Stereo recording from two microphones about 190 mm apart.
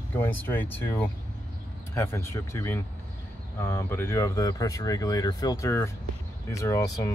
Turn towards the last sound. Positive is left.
turn(degrees=15)  # may be behind; listen again after turning